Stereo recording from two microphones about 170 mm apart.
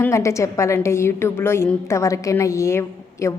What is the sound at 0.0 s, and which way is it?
A woman's voice, 15° left (ahead or behind).